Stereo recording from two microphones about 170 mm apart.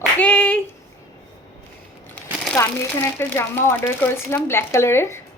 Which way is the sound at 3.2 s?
15° left (ahead or behind).